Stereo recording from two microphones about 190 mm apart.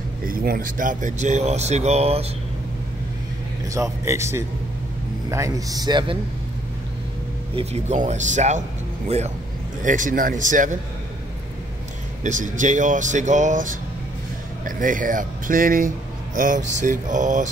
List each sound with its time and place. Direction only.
0.3 s speech: 50° right (ahead or behind); by 2.2 s 35° right (ahead or behind)
3.7 s speech: 15° right (ahead or behind)
7.5 s speech: 35° right (ahead or behind)
12.2 s speech: 40° right (ahead or behind)